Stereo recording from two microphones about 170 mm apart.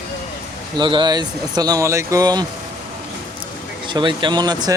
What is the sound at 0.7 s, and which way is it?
Speech, 25° right (ahead or behind).